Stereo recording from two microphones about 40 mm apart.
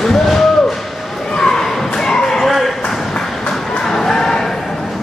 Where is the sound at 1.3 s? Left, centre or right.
Centre.